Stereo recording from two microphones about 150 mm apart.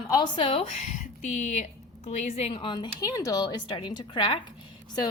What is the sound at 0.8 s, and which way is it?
A woman's voice, 55° left (ahead or behind).